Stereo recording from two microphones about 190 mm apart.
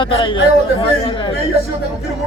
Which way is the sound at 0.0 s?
25° left (ahead or behind).